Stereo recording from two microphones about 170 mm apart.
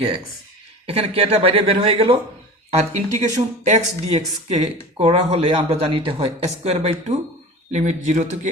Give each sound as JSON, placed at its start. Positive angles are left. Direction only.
{"t": 0.9, "sound": "speech", "side_deg": -35}